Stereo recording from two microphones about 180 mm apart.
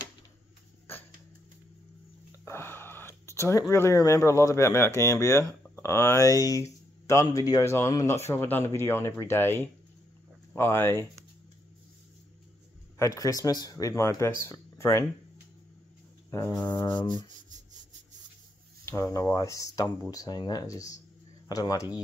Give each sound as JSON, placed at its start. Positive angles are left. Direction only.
{"t": 2.4, "sound": "speech", "side_deg": 15}
{"t": 13.0, "sound": "speech", "side_deg": 20}
{"t": 16.3, "sound": "speech", "side_deg": 15}
{"t": 18.9, "sound": "speech", "side_deg": 15}